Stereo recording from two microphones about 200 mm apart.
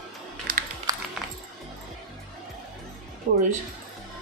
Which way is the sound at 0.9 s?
20° right (ahead or behind).